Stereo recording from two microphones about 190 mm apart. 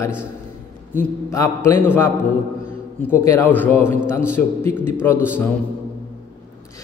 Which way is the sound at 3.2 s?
10° left (ahead or behind).